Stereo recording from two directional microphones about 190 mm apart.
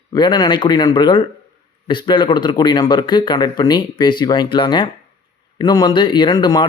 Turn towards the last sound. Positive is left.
turn(degrees=20)  # may be behind; listen again after turning